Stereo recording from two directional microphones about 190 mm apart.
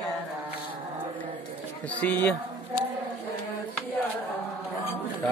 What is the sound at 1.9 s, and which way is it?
Speech, 10° left (ahead or behind).